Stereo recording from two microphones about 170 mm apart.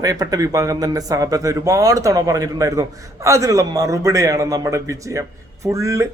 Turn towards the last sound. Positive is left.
turn(degrees=-20)  # may be behind; listen again after turning